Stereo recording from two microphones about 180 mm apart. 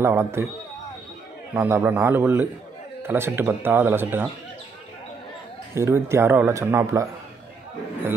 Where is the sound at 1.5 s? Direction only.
15° right (ahead or behind).